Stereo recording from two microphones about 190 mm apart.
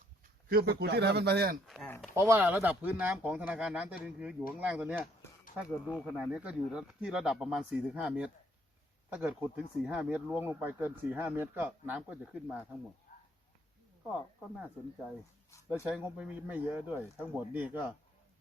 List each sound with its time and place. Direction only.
0.4 s a man's voice: 55° right (ahead or behind)
1.6 s speech: centre (ahead or behind)
2.1 s speech: 10° right (ahead or behind)
14.1 s speech: 5° right (ahead or behind)
15.9 s speech: 5° right (ahead or behind)